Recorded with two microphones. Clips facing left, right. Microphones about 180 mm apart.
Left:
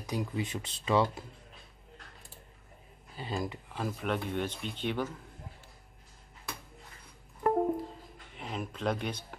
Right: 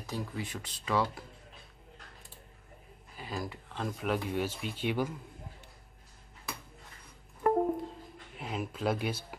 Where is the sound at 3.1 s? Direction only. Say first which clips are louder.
Left 3 dB; 25° left (ahead or behind).